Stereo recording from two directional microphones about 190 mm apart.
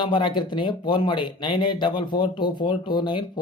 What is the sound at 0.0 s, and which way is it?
Speech, 25° left (ahead or behind).